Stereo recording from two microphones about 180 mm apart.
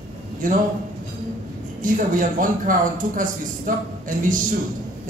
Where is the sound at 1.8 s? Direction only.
45° right (ahead or behind).